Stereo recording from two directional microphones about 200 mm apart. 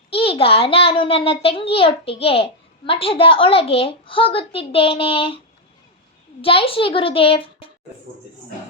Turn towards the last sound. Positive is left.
turn(degrees=25)  # may be behind; listen again after turning